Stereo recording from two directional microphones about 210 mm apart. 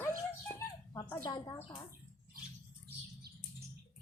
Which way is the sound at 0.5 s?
15° left (ahead or behind).